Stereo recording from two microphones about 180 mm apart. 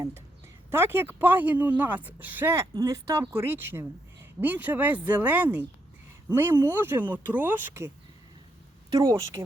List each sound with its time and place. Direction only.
0.0 s speech: 15° right (ahead or behind)
8.9 s speech: 20° right (ahead or behind)